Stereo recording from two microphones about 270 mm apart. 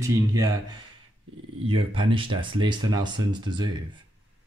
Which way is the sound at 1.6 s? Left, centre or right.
Centre.